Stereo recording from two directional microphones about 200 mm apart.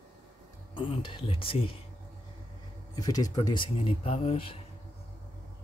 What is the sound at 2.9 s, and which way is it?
Speech, 20° left (ahead or behind).